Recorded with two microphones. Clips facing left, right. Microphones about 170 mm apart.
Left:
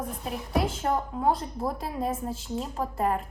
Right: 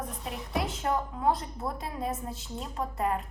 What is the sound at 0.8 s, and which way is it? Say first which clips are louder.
Speech: left 2 dB; 30° left (ahead or behind).